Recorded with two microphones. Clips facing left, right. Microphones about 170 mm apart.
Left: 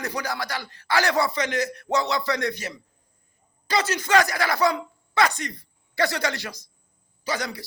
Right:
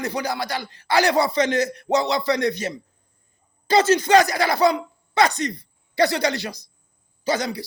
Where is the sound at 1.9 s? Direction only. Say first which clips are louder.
Right 4 dB; 35° right (ahead or behind).